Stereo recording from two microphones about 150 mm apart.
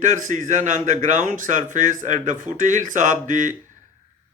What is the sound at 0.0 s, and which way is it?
Speech, 55° right (ahead or behind).